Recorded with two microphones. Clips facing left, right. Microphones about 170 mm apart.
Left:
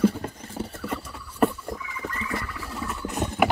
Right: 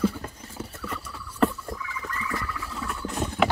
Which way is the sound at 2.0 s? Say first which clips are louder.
Left 2 dB; 30° left (ahead or behind).